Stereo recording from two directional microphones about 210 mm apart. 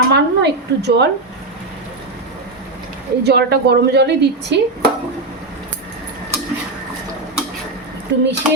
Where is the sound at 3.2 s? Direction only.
50° right (ahead or behind).